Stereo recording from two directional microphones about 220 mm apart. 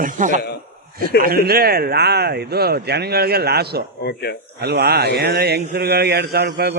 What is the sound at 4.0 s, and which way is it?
Speech, 45° left (ahead or behind).